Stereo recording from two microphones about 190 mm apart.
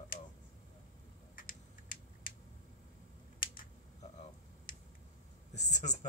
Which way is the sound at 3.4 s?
45° left (ahead or behind).